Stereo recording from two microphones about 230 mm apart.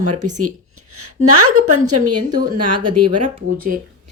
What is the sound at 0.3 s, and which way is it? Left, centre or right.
Speech, right.